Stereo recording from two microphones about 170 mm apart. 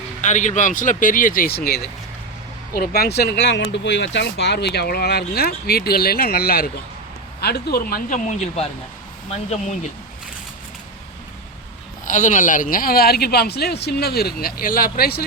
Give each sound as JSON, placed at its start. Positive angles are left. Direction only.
{"t": 0.2, "sound": "speech", "side_deg": 45}
{"t": 9.3, "sound": "speech", "side_deg": 40}
{"t": 12.0, "sound": "speech", "side_deg": 45}